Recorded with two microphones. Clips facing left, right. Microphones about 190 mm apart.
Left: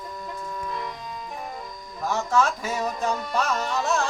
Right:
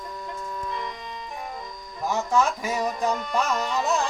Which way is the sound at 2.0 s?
15° right (ahead or behind).